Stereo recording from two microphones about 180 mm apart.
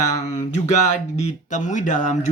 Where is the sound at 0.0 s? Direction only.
15° left (ahead or behind).